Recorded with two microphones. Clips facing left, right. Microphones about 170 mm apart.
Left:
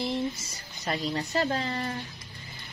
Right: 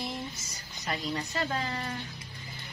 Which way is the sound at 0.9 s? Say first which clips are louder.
Left 4 dB; 30° left (ahead or behind).